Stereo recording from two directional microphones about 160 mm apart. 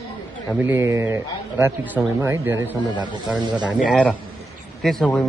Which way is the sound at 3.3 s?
25° right (ahead or behind).